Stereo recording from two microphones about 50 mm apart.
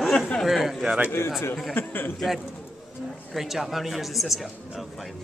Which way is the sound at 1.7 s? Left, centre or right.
Left.